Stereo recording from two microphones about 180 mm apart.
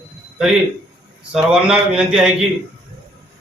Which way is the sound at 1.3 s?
5° right (ahead or behind).